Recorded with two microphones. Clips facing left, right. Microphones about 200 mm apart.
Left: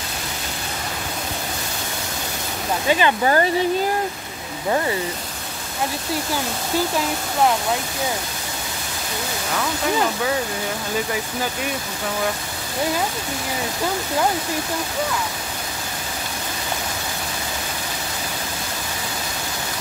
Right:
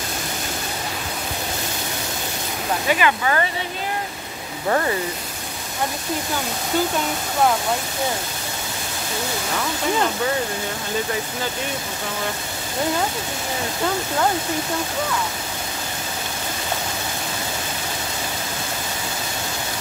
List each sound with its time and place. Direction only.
2.9 s speech: 30° left (ahead or behind)